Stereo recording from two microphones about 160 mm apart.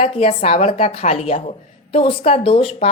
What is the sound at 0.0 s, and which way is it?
A woman's voice, 35° left (ahead or behind).